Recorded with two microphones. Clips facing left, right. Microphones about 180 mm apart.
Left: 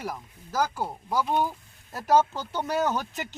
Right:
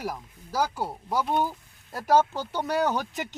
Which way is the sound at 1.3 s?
5° right (ahead or behind).